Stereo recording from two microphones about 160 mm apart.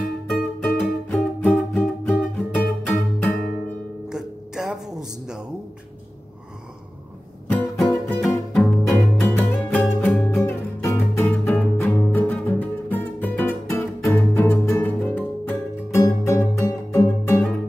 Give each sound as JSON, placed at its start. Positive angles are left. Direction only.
{"t": 0.6, "sound": "music", "side_deg": 5}
{"t": 4.1, "sound": "a sound", "side_deg": -5}
{"t": 7.8, "sound": "music", "side_deg": 0}